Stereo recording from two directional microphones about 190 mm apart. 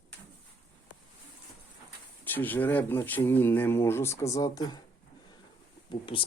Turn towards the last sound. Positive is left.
turn(degrees=25)  # may be behind; listen again after turning